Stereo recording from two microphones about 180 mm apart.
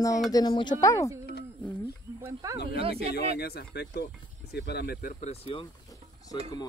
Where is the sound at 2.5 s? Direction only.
65° left (ahead or behind).